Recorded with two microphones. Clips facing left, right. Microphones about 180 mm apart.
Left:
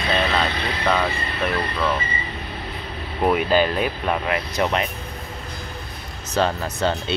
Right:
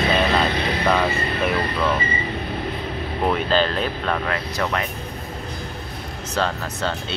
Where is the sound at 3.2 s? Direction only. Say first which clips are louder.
Left 2 dB; 10° left (ahead or behind).